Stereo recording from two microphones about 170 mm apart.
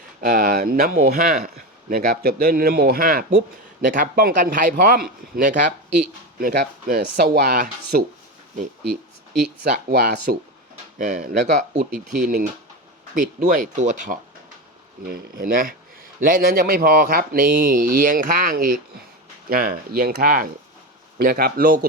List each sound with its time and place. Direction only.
0.2 s speech: 55° right (ahead or behind)
9.9 s speech: 65° right (ahead or behind)
10.9 s speech: 50° right (ahead or behind)